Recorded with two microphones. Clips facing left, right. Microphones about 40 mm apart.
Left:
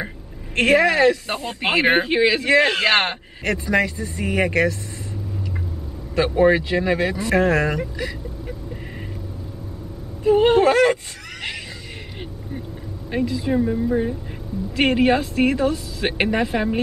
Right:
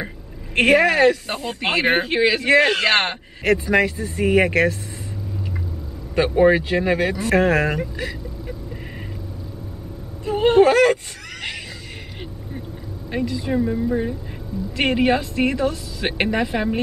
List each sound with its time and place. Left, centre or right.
0.7 s speech: centre
1.3 s speech: centre
3.4 s speech: centre
6.2 s speech: centre
7.3 s speech: centre
10.2 s a sound: centre
10.7 s speech: centre
13.3 s speech: centre